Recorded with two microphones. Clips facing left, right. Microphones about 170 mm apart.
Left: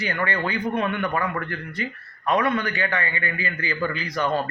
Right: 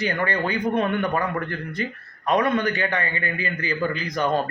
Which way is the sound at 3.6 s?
40° right (ahead or behind).